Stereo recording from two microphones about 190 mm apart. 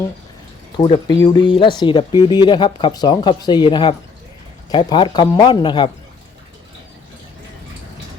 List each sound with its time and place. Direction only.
0.8 s speech: 30° left (ahead or behind)